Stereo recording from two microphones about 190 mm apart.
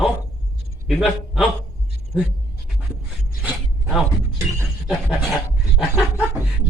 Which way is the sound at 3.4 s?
5° right (ahead or behind).